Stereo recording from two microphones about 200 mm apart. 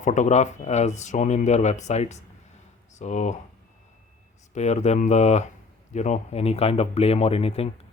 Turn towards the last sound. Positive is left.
turn(degrees=30)  # may be behind; listen again after turning